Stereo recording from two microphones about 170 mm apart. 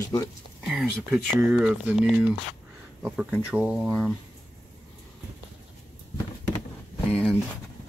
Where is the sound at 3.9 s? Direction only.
5° left (ahead or behind).